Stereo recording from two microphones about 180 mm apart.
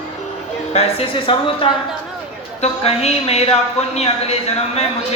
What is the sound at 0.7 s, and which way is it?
Speech, 35° left (ahead or behind).